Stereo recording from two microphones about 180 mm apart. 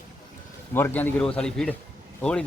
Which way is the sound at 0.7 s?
10° left (ahead or behind).